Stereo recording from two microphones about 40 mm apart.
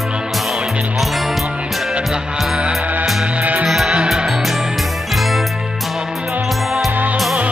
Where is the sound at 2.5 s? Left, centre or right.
Centre.